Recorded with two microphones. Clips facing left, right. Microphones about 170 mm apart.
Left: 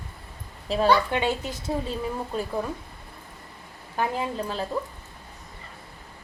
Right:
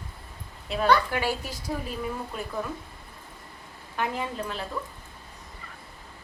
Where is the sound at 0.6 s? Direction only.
35° left (ahead or behind).